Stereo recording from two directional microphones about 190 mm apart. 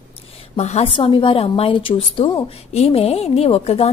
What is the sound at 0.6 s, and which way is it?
A woman's voice, 35° left (ahead or behind).